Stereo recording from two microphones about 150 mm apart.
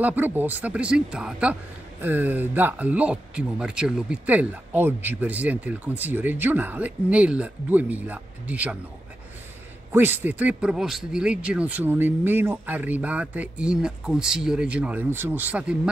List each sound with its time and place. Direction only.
0.0 s a man's voice: 10° right (ahead or behind)
9.9 s a man's voice: 15° right (ahead or behind)